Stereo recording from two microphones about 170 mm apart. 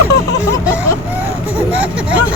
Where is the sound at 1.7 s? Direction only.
10° right (ahead or behind).